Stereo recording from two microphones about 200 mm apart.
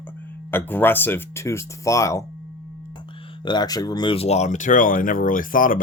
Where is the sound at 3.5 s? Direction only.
20° left (ahead or behind).